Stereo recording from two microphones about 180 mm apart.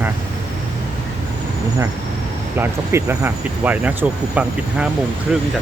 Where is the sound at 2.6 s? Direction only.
10° right (ahead or behind).